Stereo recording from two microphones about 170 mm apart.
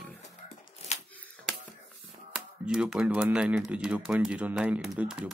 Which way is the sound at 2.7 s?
5° right (ahead or behind).